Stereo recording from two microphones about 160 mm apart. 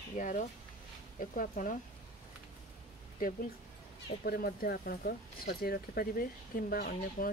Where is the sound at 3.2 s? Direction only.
65° left (ahead or behind).